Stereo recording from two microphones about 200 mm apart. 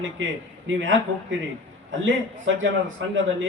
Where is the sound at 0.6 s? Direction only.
70° right (ahead or behind).